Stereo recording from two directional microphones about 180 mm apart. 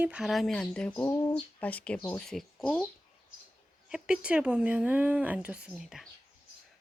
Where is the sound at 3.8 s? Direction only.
5° right (ahead or behind).